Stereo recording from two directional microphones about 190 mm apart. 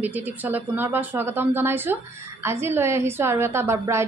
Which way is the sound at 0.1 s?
10° right (ahead or behind).